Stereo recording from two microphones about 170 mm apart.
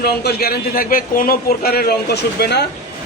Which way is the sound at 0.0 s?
65° left (ahead or behind).